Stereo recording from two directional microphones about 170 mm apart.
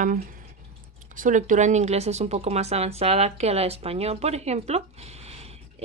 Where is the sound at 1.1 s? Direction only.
50° right (ahead or behind).